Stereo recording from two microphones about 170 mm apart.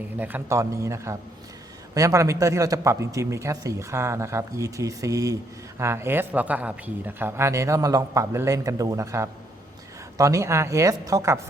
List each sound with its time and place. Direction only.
0.2 s a man's voice: 10° right (ahead or behind)